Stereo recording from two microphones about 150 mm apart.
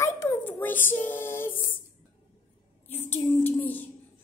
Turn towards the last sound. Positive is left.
turn(degrees=10)  # may be behind; listen again after turning